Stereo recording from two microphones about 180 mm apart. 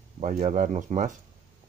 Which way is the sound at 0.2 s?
45° right (ahead or behind).